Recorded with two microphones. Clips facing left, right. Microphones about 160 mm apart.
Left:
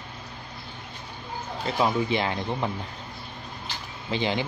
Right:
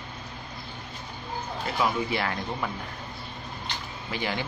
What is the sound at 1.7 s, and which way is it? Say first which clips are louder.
Speech: left 3 dB; 20° left (ahead or behind).